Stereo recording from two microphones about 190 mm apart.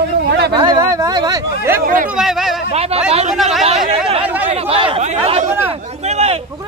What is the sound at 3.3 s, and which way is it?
Speech, centre (ahead or behind).